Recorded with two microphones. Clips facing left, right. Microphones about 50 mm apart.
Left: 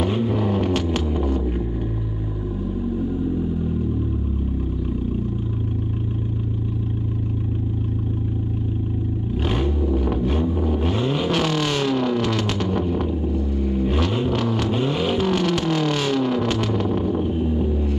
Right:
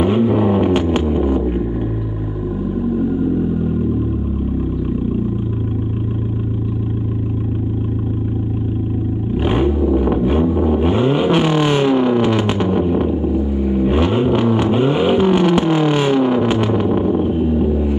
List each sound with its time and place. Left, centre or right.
0.0 s vehicle: centre
9.4 s vehicle: right